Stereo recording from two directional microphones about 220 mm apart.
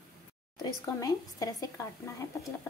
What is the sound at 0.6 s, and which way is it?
Speech, 15° left (ahead or behind).